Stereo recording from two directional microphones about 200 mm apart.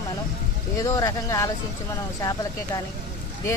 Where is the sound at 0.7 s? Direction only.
15° left (ahead or behind).